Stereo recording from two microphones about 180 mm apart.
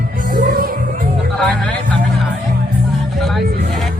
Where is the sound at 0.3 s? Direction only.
55° right (ahead or behind).